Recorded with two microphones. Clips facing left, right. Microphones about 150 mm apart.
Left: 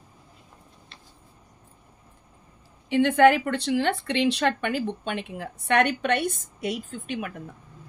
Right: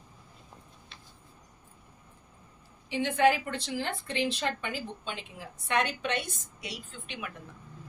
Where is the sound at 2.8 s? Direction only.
60° left (ahead or behind); by 7.3 s 45° left (ahead or behind).